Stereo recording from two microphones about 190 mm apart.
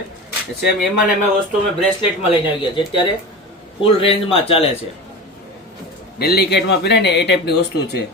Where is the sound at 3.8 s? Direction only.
30° left (ahead or behind).